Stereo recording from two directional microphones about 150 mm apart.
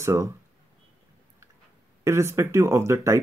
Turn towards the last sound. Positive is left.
turn(degrees=-20)  # may be behind; listen again after turning